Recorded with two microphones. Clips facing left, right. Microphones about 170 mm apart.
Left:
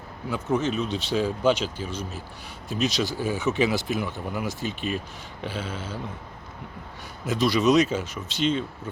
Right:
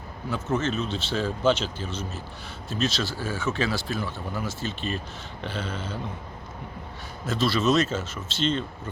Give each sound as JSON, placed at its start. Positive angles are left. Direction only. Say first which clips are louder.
{"t": 0.3, "sound": "speech", "louder": "left 2 dB", "side_deg": 15}
{"t": 7.3, "sound": "speech", "louder": "left 2 dB", "side_deg": 15}